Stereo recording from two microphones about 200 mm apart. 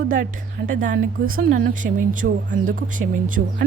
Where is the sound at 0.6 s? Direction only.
55° right (ahead or behind).